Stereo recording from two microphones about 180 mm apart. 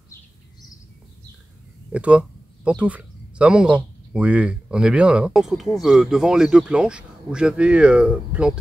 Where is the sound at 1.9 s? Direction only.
5° right (ahead or behind).